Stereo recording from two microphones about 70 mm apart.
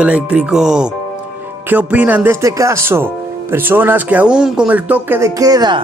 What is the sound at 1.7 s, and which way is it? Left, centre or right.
Speech, right.